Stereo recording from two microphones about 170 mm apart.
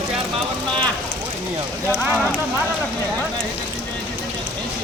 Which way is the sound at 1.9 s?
15° right (ahead or behind).